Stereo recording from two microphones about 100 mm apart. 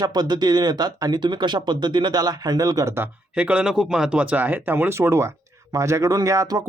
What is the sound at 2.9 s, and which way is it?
Speech, 15° right (ahead or behind).